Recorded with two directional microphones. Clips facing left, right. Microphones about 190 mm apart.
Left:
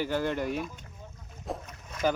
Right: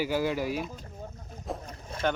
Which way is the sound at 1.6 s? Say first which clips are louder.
Left 1 dB; 30° right (ahead or behind).